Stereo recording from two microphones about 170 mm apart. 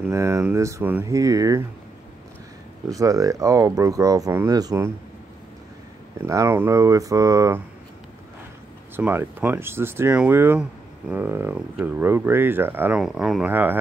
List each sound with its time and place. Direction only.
0.1 s speech: 15° right (ahead or behind)
2.9 s speech: 20° right (ahead or behind)
6.2 s speech: 15° right (ahead or behind)
8.9 s speech: 15° right (ahead or behind)
13.0 s speech: centre (ahead or behind)